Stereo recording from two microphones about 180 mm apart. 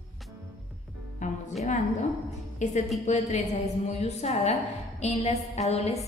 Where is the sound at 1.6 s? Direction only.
40° left (ahead or behind).